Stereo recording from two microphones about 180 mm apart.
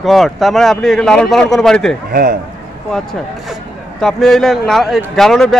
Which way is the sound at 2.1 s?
55° right (ahead or behind).